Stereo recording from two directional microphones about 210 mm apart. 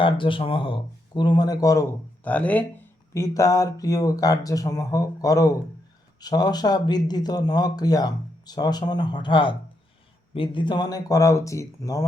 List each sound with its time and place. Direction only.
0.0 s speech: 25° left (ahead or behind)